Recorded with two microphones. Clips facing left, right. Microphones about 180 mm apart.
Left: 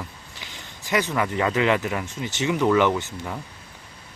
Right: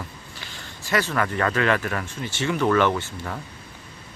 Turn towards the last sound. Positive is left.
turn(degrees=15)  # may be behind; listen again after turning